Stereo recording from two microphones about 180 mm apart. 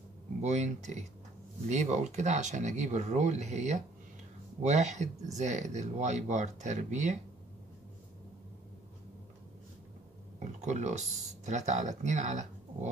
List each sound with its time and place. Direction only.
0.4 s speech: 40° right (ahead or behind)
10.4 s speech: 40° right (ahead or behind)